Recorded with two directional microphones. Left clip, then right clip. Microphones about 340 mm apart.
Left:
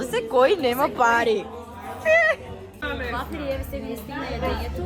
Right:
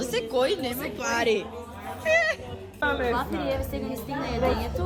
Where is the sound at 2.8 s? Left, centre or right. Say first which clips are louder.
Right 4 dB; right.